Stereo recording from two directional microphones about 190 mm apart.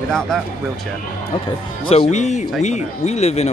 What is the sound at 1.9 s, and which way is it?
Speech, 35° left (ahead or behind).